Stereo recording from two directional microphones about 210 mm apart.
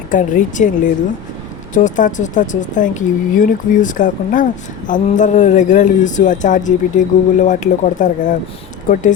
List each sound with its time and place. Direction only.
0.1 s speech: 35° left (ahead or behind)
1.7 s speech: 40° left (ahead or behind)